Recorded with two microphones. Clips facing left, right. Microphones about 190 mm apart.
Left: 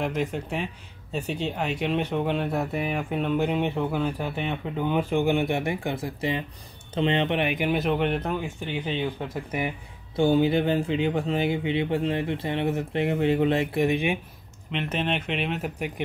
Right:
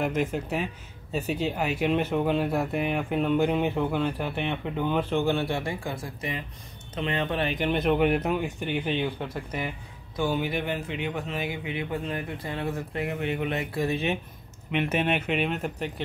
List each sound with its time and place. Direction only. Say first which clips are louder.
0.0 s speech: right 1 dB; centre (ahead or behind)
8.8 s speech: even; 5° left (ahead or behind)
10.1 s speech: left 7 dB; 30° left (ahead or behind)
14.7 s speech: right 2 dB; 10° right (ahead or behind)